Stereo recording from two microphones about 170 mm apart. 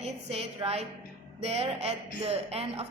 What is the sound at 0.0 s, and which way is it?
A woman's voice, 40° right (ahead or behind).